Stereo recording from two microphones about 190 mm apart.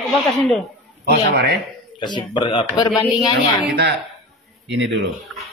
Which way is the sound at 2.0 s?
25° left (ahead or behind).